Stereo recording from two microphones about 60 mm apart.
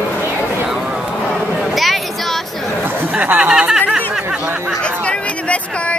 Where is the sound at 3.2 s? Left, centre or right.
Right.